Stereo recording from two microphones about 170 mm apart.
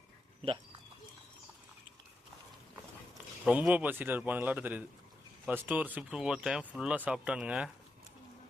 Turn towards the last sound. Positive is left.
turn(degrees=-5)  # may be behind; listen again after turning